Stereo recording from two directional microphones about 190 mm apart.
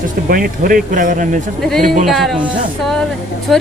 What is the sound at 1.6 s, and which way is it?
Speech, centre (ahead or behind).